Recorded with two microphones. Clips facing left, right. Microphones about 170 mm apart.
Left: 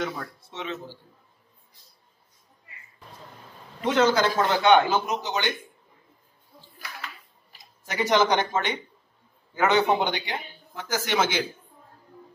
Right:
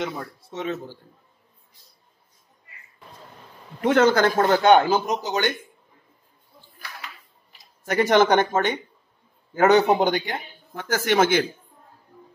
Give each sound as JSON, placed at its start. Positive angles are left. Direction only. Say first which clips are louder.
{"t": 0.5, "sound": "a man's voice", "louder": "right 7 dB", "side_deg": -45}
{"t": 3.8, "sound": "a man's voice", "louder": "right 4 dB", "side_deg": -55}
{"t": 7.8, "sound": "a man's voice", "louder": "right 4 dB", "side_deg": -55}